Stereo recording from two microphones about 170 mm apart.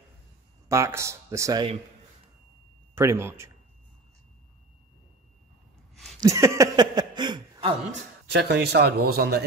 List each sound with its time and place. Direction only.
0.7 s speech: 15° right (ahead or behind)
2.9 s speech: 15° right (ahead or behind)
6.2 s a sound: 15° right (ahead or behind)
8.3 s speech: 70° right (ahead or behind)